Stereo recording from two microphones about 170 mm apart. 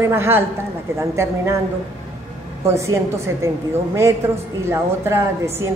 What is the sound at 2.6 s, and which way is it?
A woman's voice, 15° right (ahead or behind).